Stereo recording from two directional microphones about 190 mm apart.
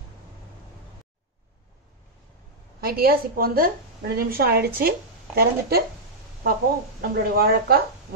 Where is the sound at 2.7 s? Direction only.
55° right (ahead or behind).